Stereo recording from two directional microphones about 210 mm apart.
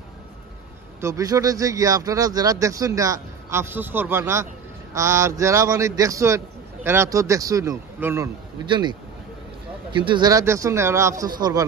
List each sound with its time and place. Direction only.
1.0 s speech: 15° right (ahead or behind)
9.9 s speech: 20° right (ahead or behind)